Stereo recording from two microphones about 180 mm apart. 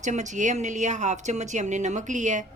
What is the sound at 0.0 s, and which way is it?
A woman's voice, 40° right (ahead or behind).